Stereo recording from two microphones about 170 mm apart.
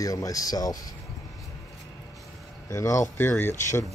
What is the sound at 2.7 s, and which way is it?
Speech, 15° left (ahead or behind).